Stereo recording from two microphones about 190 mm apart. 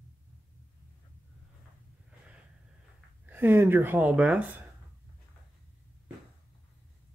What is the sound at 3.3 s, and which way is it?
Speech, 10° right (ahead or behind).